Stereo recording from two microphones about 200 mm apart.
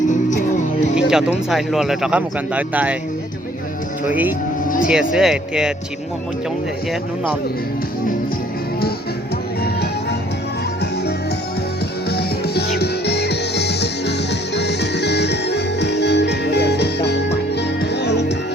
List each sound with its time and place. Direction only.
0.1 s music: 40° left (ahead or behind)
0.9 s speech: 5° right (ahead or behind)
4.1 s speech: 10° right (ahead or behind)
4.6 s speech: 40° left (ahead or behind)
4.9 s speech: 5° right (ahead or behind)
9.6 s music: 55° left (ahead or behind)
12.0 s music: 50° left (ahead or behind)